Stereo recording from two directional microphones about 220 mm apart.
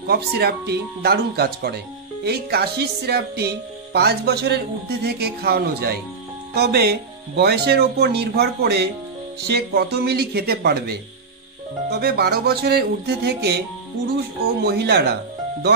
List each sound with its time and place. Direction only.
0.0 s music: 45° right (ahead or behind)
14.6 s music: 45° right (ahead or behind)